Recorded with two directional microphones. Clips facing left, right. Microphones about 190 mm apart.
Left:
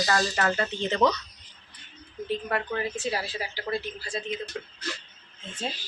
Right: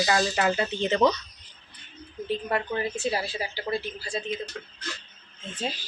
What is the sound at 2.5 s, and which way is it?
A woman's voice, 25° right (ahead or behind).